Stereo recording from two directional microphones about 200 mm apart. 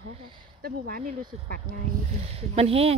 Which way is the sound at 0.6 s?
45° right (ahead or behind).